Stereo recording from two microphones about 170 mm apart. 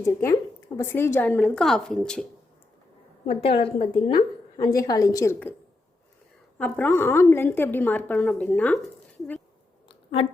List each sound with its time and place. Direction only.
0.0 s a woman's voice: 15° left (ahead or behind)
1.4 s speech: 5° left (ahead or behind)
3.2 s a woman's voice: 35° left (ahead or behind); by 5.5 s 15° left (ahead or behind)
6.6 s a woman's voice: 10° left (ahead or behind)
9.9 s a sound: 30° left (ahead or behind)